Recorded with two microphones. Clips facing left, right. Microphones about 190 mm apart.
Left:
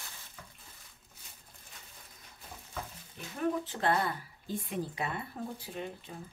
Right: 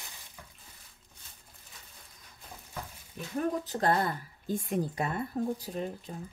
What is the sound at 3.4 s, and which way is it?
Speech, 40° right (ahead or behind).